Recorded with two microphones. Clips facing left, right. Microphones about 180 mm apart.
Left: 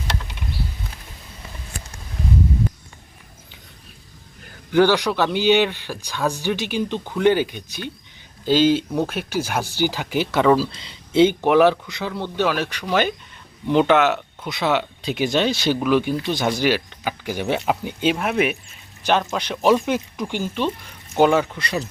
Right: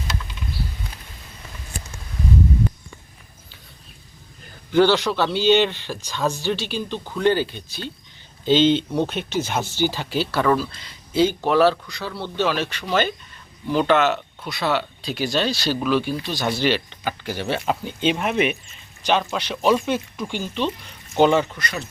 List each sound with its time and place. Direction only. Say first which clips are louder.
4.7 s speech: even; 15° left (ahead or behind)
10.6 s speech: left 4 dB; 30° left (ahead or behind); by 21.6 s 10° left (ahead or behind)